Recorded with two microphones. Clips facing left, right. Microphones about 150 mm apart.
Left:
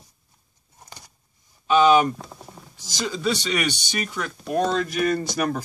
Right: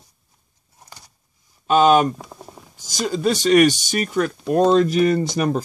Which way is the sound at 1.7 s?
50° right (ahead or behind).